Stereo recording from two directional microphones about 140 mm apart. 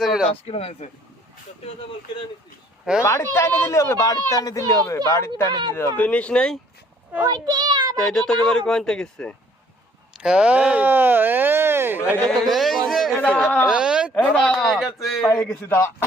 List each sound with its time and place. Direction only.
0.0 s speech: 5° right (ahead or behind)
0.4 s speech: 45° left (ahead or behind)
3.0 s speech: 20° left (ahead or behind)
7.3 s a child's voice: 30° right (ahead or behind)
7.9 s speech: 5° left (ahead or behind)
10.2 s speech: 5° right (ahead or behind)
12.1 s a sound: 5° left (ahead or behind)
13.2 s speech: 10° left (ahead or behind)
13.7 s speech: 5° right (ahead or behind); by 15.9 s 10° left (ahead or behind)